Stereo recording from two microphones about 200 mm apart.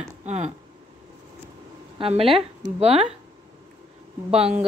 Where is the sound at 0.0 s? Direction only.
35° right (ahead or behind).